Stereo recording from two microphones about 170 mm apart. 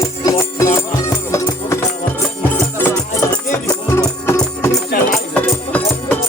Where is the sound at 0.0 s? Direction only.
20° left (ahead or behind).